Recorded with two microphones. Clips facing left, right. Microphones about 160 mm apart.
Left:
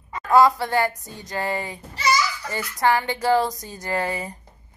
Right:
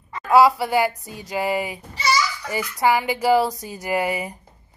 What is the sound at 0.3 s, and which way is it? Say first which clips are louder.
A woman's voice: right 1 dB; 10° right (ahead or behind).